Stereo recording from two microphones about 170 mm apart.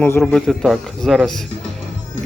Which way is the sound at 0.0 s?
10° left (ahead or behind).